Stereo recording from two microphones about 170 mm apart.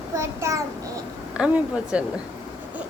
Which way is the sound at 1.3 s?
5° right (ahead or behind).